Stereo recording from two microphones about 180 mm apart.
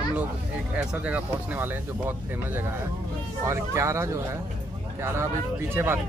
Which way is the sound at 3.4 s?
15° right (ahead or behind).